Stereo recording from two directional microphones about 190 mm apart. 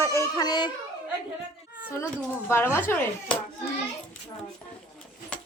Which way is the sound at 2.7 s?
10° left (ahead or behind).